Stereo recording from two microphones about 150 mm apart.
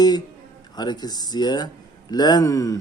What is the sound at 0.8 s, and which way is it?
Speech, 25° left (ahead or behind).